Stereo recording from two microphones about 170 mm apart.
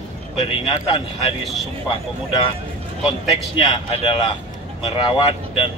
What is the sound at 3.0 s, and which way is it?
Speech, 30° left (ahead or behind).